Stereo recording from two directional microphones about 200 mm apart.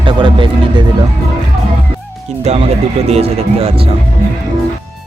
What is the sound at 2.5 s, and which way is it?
Speech, 35° right (ahead or behind).